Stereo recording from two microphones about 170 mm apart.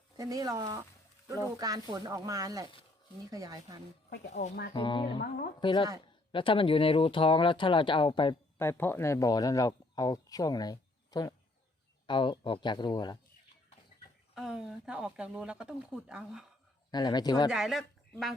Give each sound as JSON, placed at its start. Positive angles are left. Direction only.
{"t": 0.2, "sound": "speech", "side_deg": -20}
{"t": 4.4, "sound": "speech", "side_deg": 40}
{"t": 4.7, "sound": "speech", "side_deg": 30}
{"t": 8.5, "sound": "speech", "side_deg": 15}
{"t": 14.3, "sound": "speech", "side_deg": 0}
{"t": 16.9, "sound": "speech", "side_deg": 25}
{"t": 17.5, "sound": "speech", "side_deg": 0}